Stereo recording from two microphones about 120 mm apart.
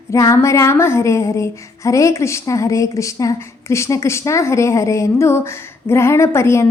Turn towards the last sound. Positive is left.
turn(degrees=20)  # may be behind; listen again after turning